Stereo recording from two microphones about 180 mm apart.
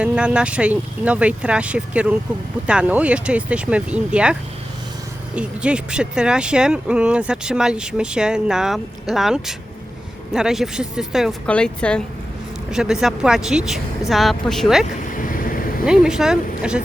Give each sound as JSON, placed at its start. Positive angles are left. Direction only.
{"t": 0.0, "sound": "speech", "side_deg": -5}
{"t": 15.1, "sound": "vehicle", "side_deg": 50}
{"t": 15.9, "sound": "speech", "side_deg": -5}